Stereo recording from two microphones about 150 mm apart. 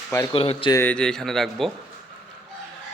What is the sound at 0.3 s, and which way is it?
Speech, 40° left (ahead or behind).